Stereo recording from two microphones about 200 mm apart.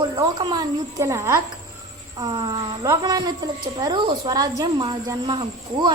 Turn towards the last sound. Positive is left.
turn(degrees=-20)  # may be behind; listen again after turning